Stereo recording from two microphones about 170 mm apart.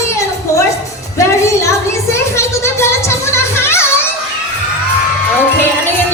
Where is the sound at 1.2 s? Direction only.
15° left (ahead or behind).